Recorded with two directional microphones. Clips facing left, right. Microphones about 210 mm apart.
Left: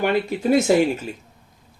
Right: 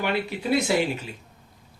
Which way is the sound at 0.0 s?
45° left (ahead or behind).